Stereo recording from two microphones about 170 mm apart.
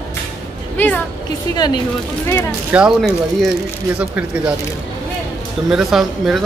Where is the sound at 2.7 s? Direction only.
5° right (ahead or behind).